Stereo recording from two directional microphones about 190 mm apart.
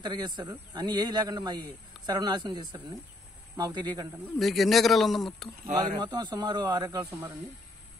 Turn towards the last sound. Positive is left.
turn(degrees=-15)  # may be behind; listen again after turning